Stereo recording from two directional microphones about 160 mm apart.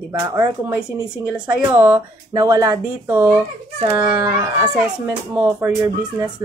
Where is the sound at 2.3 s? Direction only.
20° right (ahead or behind).